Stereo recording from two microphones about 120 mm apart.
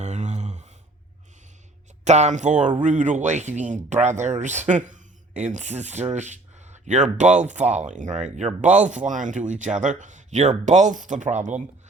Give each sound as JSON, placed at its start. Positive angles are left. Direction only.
{"t": 0.0, "sound": "a sound", "side_deg": -75}
{"t": 2.0, "sound": "speech", "side_deg": -75}
{"t": 4.7, "sound": "speech", "side_deg": -90}
{"t": 8.9, "sound": "speech", "side_deg": -90}